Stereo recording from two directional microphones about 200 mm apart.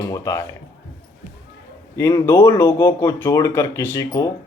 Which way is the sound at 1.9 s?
15° left (ahead or behind).